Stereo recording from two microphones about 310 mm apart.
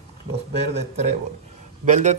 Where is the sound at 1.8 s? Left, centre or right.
Right.